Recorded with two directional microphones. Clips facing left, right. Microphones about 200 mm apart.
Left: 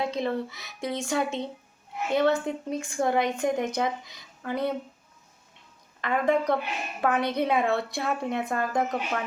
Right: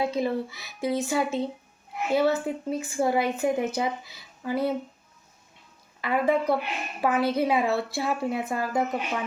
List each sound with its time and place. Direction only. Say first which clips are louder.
0.0 s a woman's voice: right 2 dB; 5° right (ahead or behind)
6.0 s a woman's voice: right 1 dB; 5° right (ahead or behind)